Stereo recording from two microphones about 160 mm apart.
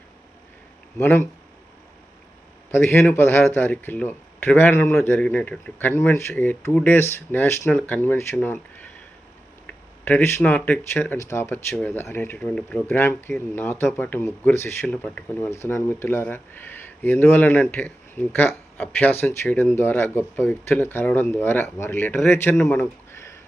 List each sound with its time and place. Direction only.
0.9 s speech: 15° left (ahead or behind)
2.7 s speech: 15° left (ahead or behind)